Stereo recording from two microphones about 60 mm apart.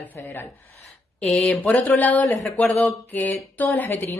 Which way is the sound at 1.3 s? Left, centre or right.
Centre.